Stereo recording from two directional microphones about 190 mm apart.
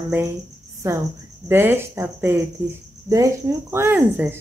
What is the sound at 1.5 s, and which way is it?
Speech, 10° right (ahead or behind).